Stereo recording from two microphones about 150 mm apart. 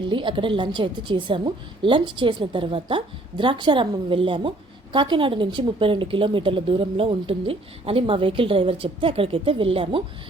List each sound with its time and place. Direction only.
0.1 s a woman's voice: 35° right (ahead or behind)